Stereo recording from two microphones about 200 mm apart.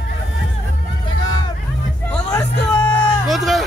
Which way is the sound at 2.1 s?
5° left (ahead or behind).